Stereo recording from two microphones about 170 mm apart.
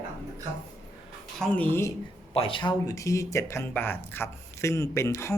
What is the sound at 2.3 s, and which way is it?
Speech, 30° left (ahead or behind).